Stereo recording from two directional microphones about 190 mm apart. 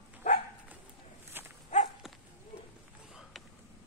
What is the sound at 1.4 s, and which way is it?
Dog, 10° right (ahead or behind).